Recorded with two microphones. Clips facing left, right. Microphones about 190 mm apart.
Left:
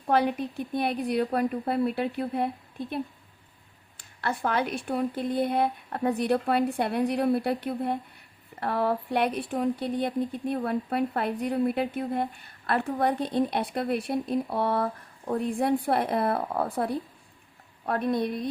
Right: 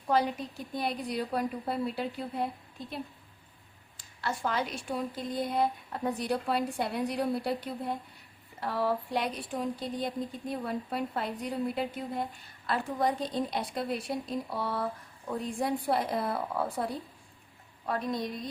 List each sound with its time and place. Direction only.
0.1 s speech: 60° left (ahead or behind)